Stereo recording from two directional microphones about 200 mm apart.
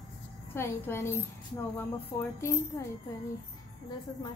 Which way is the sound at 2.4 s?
15° left (ahead or behind).